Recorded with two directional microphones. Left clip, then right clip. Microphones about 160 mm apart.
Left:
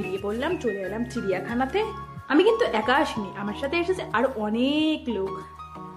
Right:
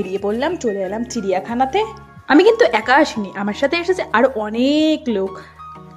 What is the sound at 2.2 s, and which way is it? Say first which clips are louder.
A woman's voice: right 9 dB; 45° right (ahead or behind).